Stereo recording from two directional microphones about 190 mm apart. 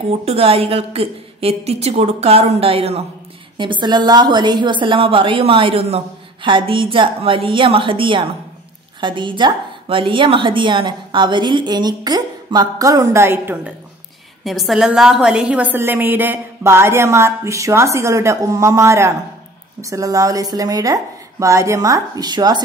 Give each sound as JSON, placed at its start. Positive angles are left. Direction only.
{"t": 0.2, "sound": "a woman's voice", "side_deg": -30}
{"t": 14.4, "sound": "a woman's voice", "side_deg": 0}